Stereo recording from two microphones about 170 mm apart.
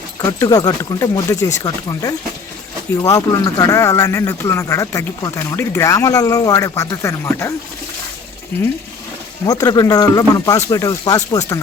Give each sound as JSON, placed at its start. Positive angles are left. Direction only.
{"t": 0.2, "sound": "speech", "side_deg": 20}
{"t": 8.5, "sound": "speech", "side_deg": 10}
{"t": 9.5, "sound": "speech", "side_deg": 20}